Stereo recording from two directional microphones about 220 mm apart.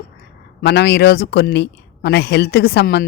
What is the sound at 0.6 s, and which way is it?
Speech, 50° left (ahead or behind).